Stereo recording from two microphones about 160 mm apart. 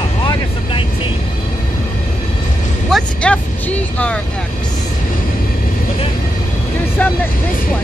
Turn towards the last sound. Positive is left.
turn(degrees=10)  # may be behind; listen again after turning